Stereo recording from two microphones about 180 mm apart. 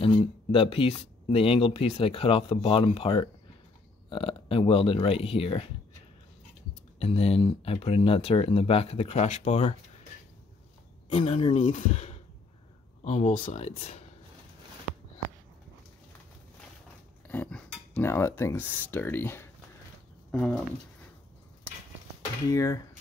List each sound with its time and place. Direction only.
0.0 s speech: 30° left (ahead or behind)
7.0 s speech: 35° left (ahead or behind)
11.1 s speech: 30° left (ahead or behind)
17.3 s cutlery: 5° left (ahead or behind)
20.2 s a sound: 5° left (ahead or behind)
22.5 s speech: 20° left (ahead or behind)